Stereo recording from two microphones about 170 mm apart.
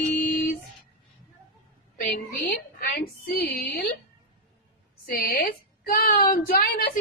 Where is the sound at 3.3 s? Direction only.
75° left (ahead or behind).